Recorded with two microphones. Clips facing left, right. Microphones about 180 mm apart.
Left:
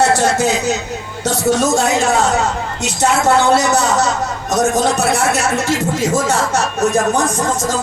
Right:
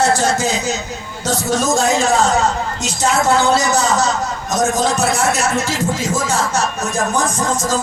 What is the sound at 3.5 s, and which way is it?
Speech, 65° left (ahead or behind).